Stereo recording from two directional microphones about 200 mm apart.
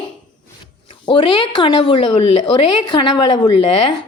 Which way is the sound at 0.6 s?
25° left (ahead or behind).